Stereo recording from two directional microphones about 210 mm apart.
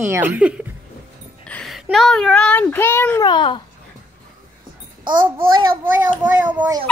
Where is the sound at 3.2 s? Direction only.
20° left (ahead or behind).